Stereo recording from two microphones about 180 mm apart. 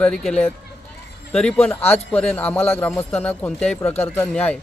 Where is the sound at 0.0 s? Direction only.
5° left (ahead or behind).